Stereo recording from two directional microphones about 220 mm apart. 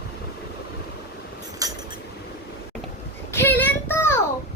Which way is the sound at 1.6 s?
15° right (ahead or behind).